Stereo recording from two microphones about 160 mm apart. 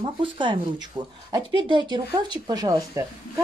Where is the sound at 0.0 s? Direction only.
30° right (ahead or behind).